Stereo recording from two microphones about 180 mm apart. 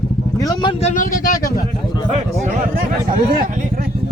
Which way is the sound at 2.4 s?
45° right (ahead or behind).